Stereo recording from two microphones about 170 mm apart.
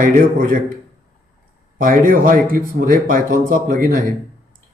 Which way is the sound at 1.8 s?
55° right (ahead or behind).